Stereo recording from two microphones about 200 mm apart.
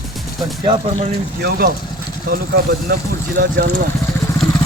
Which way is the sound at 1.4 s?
50° right (ahead or behind).